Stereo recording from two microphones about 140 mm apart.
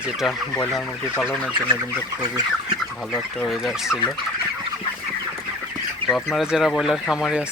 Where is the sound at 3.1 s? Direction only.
Centre (ahead or behind).